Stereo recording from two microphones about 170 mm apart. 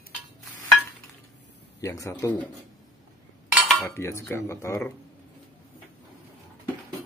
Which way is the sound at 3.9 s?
15° left (ahead or behind).